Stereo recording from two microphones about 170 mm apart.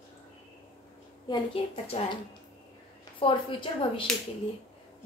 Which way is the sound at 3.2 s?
30° left (ahead or behind).